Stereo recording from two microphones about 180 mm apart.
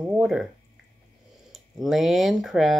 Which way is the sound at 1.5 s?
Centre (ahead or behind).